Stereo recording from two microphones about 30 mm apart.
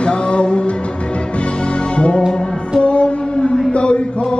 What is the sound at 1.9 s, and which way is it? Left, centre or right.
Music, left.